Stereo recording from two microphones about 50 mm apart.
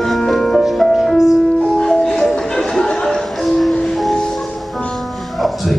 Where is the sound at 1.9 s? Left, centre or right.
Centre.